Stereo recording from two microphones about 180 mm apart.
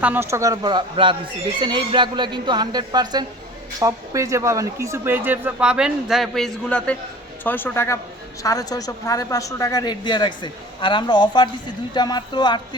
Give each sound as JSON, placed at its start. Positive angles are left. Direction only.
{"t": 0.0, "sound": "a woman's voice", "side_deg": -10}